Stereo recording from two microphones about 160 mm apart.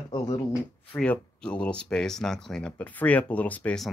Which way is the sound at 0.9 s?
5° left (ahead or behind).